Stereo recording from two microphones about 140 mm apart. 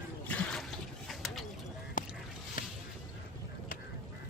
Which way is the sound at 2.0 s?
70° left (ahead or behind).